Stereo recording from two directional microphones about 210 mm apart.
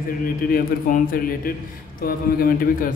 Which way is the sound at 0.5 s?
40° left (ahead or behind).